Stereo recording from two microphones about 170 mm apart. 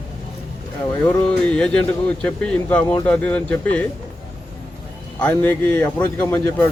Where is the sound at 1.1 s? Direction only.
5° left (ahead or behind).